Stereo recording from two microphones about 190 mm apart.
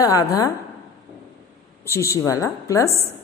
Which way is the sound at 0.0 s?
20° left (ahead or behind).